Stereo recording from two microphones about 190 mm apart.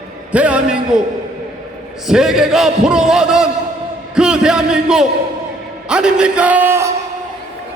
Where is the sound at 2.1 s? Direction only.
Centre (ahead or behind).